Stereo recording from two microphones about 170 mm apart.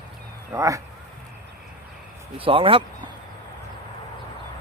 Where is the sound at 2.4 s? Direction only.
30° right (ahead or behind).